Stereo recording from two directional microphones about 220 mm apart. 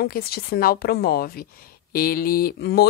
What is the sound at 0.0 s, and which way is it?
A woman's voice, 45° left (ahead or behind).